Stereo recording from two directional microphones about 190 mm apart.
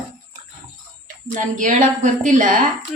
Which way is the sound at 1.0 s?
45° right (ahead or behind).